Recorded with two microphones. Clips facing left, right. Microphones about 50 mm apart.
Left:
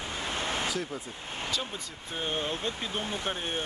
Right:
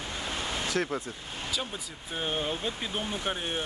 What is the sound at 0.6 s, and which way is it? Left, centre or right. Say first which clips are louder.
Speech: right 3 dB; right.